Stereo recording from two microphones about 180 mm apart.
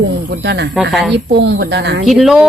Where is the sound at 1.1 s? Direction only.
70° right (ahead or behind).